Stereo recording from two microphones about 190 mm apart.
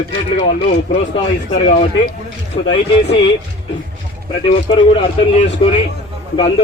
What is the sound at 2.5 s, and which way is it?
Speech, 25° left (ahead or behind).